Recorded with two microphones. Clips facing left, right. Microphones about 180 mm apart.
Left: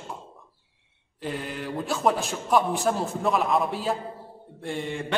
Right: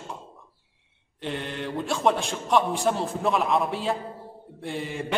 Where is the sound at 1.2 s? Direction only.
5° left (ahead or behind).